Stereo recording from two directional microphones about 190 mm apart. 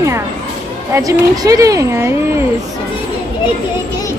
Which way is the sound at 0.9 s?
20° right (ahead or behind).